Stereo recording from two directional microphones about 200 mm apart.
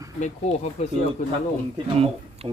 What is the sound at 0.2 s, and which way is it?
Speech, 35° left (ahead or behind).